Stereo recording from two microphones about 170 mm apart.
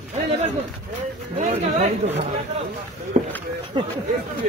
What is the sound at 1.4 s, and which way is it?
Speech, 40° right (ahead or behind).